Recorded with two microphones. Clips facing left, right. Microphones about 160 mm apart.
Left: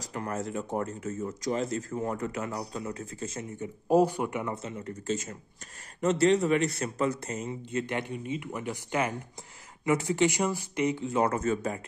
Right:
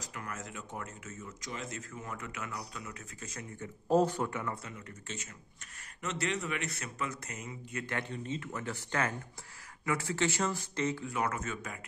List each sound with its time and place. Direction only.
0.0 s speech: 35° left (ahead or behind)
7.8 s speech: 15° left (ahead or behind); by 11.8 s 35° left (ahead or behind)